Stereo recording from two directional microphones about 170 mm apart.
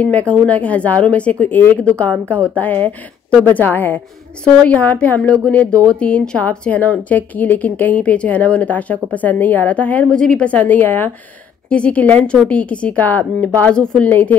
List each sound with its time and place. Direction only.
0.0 s a woman's voice: 10° left (ahead or behind)
2.3 s a woman's voice: 10° right (ahead or behind)
2.6 s a woman's voice: 10° left (ahead or behind)
5.7 s speech: 20° right (ahead or behind)
5.9 s a woman's voice: 5° left (ahead or behind)